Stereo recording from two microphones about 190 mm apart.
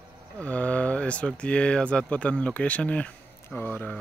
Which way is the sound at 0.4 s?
5° left (ahead or behind).